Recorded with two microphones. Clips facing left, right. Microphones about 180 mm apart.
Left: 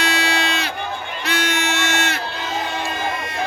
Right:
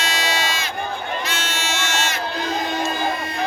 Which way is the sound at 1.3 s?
60° left (ahead or behind).